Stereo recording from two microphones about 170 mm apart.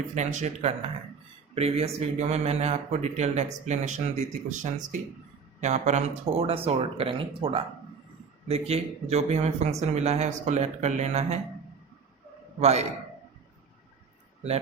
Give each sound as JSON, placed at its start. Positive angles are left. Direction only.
{"t": 0.1, "sound": "a man's voice", "side_deg": -45}
{"t": 12.5, "sound": "a man's voice", "side_deg": -40}